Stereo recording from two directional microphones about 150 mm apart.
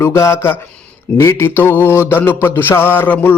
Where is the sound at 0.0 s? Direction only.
20° left (ahead or behind).